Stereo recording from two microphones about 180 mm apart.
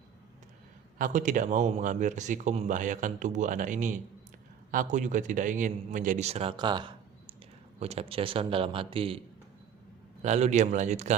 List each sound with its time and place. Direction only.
0.9 s a man's voice: 45° right (ahead or behind); by 9.2 s 30° right (ahead or behind)
10.2 s a man's voice: 40° right (ahead or behind)